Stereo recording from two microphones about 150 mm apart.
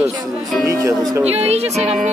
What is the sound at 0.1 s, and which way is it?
Speech, 25° right (ahead or behind).